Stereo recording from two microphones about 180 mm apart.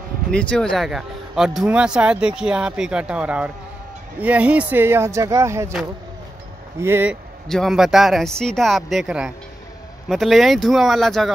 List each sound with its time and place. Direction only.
0.3 s speech: 5° left (ahead or behind); by 5.8 s 15° right (ahead or behind)
6.8 s speech: 10° right (ahead or behind)
7.4 s speech: centre (ahead or behind)